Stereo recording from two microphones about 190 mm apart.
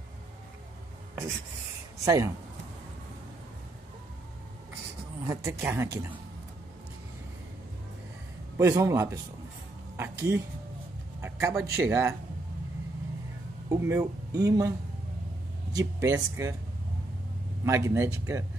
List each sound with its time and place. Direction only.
2.0 s a woman's voice: 15° right (ahead or behind)
5.2 s a woman's voice: 15° right (ahead or behind)
8.5 s a woman's voice: 15° right (ahead or behind)
13.7 s speech: 15° right (ahead or behind)
15.7 s a woman's voice: 15° right (ahead or behind)
17.6 s a woman's voice: 15° right (ahead or behind)